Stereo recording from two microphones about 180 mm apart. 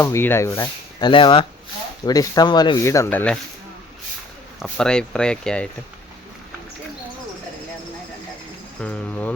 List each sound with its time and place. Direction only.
0.0 s speech: 15° left (ahead or behind)
0.9 s speech: 25° left (ahead or behind); by 3.3 s 10° left (ahead or behind)
4.6 s speech: 5° left (ahead or behind)
8.8 s speech: 10° left (ahead or behind)